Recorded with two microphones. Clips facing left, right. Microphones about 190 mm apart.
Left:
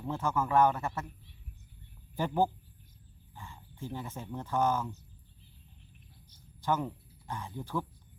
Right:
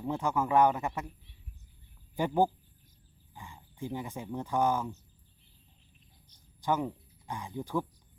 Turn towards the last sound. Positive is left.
turn(degrees=-15)  # may be behind; listen again after turning